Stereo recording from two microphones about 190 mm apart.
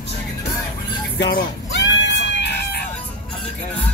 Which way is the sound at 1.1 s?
65° left (ahead or behind).